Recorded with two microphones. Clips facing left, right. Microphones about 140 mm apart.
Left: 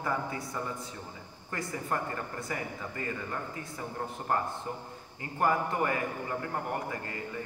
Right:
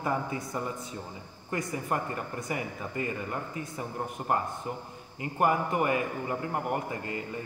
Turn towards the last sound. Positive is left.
turn(degrees=-20)  # may be behind; listen again after turning